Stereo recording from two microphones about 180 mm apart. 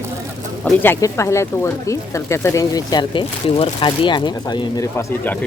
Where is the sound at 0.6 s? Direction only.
10° left (ahead or behind).